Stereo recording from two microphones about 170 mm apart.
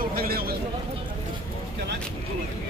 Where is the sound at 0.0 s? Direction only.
60° right (ahead or behind).